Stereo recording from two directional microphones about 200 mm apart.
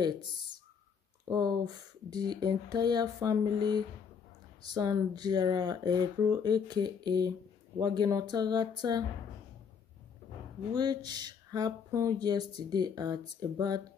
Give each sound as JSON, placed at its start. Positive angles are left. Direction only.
{"t": 0.0, "sound": "speech", "side_deg": -20}
{"t": 10.7, "sound": "speech", "side_deg": -20}